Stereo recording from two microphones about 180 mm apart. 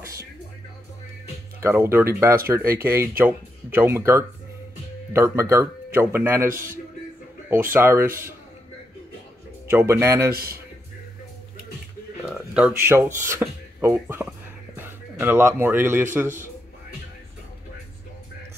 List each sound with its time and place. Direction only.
0.0 s music: 20° right (ahead or behind)
1.6 s speech: 15° right (ahead or behind)
7.7 s speech: 15° right (ahead or behind)
9.7 s speech: 15° right (ahead or behind)
10.3 s speech: 55° right (ahead or behind)
12.5 s a man's voice: 10° right (ahead or behind)